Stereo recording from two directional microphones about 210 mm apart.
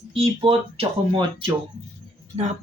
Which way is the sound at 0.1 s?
25° right (ahead or behind).